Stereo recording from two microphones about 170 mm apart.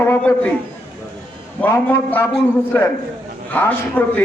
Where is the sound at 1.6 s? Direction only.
10° left (ahead or behind).